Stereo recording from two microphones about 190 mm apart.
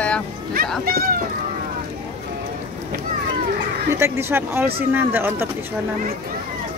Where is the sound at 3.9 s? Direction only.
15° right (ahead or behind).